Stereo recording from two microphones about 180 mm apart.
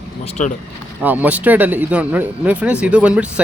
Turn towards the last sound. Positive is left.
turn(degrees=-5)  # may be behind; listen again after turning